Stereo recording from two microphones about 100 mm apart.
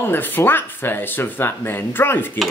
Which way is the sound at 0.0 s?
20° left (ahead or behind).